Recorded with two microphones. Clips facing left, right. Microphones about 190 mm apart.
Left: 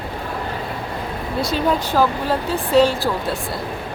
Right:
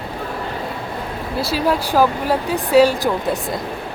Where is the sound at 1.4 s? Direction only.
5° right (ahead or behind).